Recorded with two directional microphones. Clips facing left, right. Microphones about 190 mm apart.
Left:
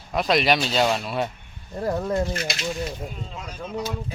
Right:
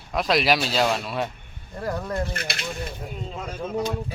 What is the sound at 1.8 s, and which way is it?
Speech, 20° left (ahead or behind).